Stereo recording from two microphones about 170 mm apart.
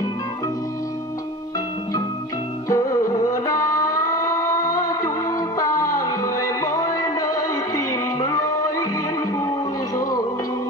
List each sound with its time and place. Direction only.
2.7 s music: 20° left (ahead or behind)